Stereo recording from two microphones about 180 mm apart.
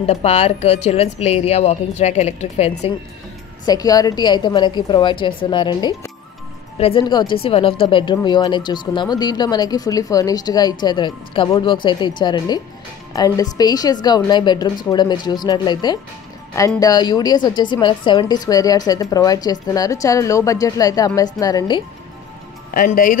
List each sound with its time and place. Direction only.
0.0 s speech: 35° left (ahead or behind)
3.6 s a woman's voice: 20° left (ahead or behind)
22.8 s speech: 50° left (ahead or behind)